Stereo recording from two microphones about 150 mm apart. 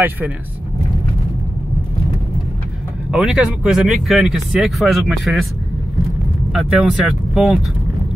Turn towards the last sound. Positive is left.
turn(degrees=-5)  # may be behind; listen again after turning